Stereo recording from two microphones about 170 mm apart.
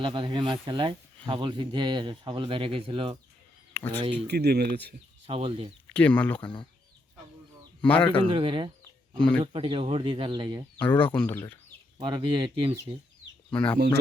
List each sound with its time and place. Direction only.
0.0 s speech: 30° right (ahead or behind)
3.8 s speech: 10° left (ahead or behind)
4.3 s speech: 75° right (ahead or behind)
5.2 s speech: 35° right (ahead or behind)
5.9 s speech: 10° left (ahead or behind)
7.8 s speech: 10° left (ahead or behind)
8.3 s speech: 30° right (ahead or behind)
8.8 s a sound: 5° left (ahead or behind)
9.4 s speech: 30° right (ahead or behind)
10.8 s speech: 10° left (ahead or behind)
11.9 s speech: 25° right (ahead or behind)
13.5 s speech: 5° left (ahead or behind)